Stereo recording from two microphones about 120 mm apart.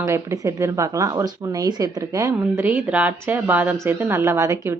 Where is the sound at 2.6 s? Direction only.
15° right (ahead or behind).